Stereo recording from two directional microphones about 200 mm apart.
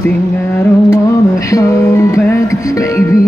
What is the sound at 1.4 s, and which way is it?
Music, 15° left (ahead or behind).